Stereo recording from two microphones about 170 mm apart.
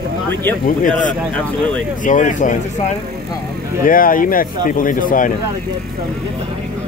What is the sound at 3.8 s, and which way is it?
A man's voice, 55° left (ahead or behind).